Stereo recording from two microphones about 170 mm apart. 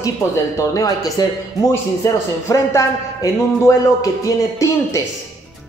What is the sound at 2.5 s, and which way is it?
Speech, 20° left (ahead or behind).